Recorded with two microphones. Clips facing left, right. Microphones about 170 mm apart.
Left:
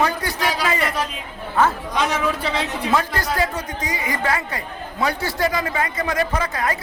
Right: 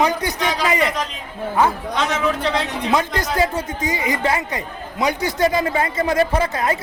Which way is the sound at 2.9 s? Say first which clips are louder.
Right 2 dB; 20° right (ahead or behind).